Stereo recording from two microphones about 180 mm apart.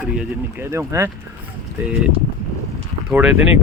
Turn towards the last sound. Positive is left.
turn(degrees=-5)  # may be behind; listen again after turning